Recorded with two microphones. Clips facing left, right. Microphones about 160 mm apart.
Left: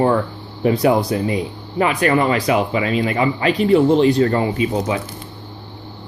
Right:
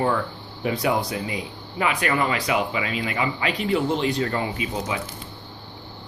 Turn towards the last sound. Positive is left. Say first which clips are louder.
# left 8 dB
turn(degrees=40)  # may be behind; listen again after turning